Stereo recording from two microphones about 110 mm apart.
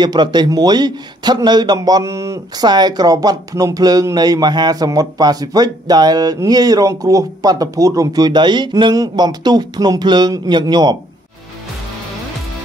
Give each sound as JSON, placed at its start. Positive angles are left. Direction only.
{"t": 0.0, "sound": "a man's voice", "side_deg": -40}